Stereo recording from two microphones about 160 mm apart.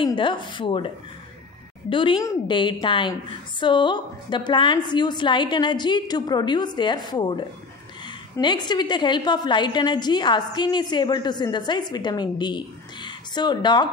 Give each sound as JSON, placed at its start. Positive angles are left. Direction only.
{"t": 0.0, "sound": "a woman's voice", "side_deg": 30}